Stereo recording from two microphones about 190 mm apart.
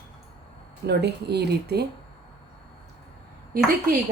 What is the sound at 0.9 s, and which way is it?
Speech, 60° right (ahead or behind).